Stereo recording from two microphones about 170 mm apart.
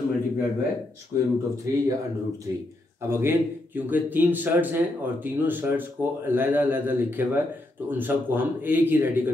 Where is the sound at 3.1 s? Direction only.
15° right (ahead or behind).